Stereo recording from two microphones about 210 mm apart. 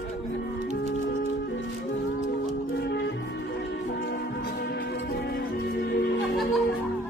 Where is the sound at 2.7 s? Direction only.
50° left (ahead or behind).